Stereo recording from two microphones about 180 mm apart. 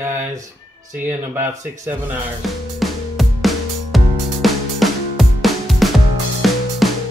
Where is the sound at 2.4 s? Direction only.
Centre (ahead or behind).